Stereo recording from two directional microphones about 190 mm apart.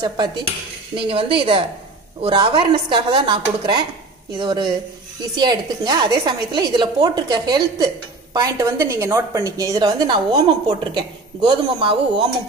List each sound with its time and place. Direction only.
0.9 s a woman's voice: 30° right (ahead or behind)